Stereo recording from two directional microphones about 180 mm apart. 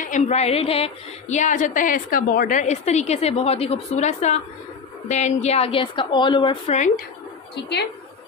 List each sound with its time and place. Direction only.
0.0 s a woman's voice: 40° left (ahead or behind)